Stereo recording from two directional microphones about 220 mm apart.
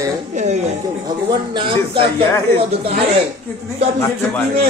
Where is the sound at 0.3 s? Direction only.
30° right (ahead or behind).